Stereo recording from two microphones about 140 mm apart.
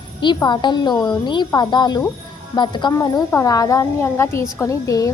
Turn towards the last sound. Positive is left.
turn(degrees=25)  # may be behind; listen again after turning